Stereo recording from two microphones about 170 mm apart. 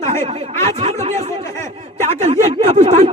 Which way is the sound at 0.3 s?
35° right (ahead or behind).